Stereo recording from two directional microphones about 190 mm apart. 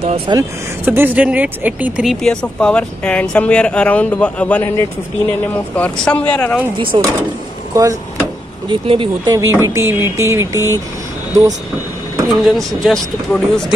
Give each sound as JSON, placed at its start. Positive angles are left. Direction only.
{"t": 0.3, "sound": "speech", "side_deg": -15}
{"t": 6.8, "sound": "speech", "side_deg": -25}
{"t": 8.6, "sound": "speech", "side_deg": -25}
{"t": 12.3, "sound": "speech", "side_deg": 0}